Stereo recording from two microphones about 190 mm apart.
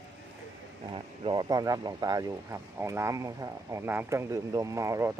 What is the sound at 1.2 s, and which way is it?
Speech, 20° right (ahead or behind).